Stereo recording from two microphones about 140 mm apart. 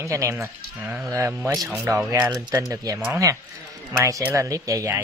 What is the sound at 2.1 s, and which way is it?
A man's voice, 25° right (ahead or behind).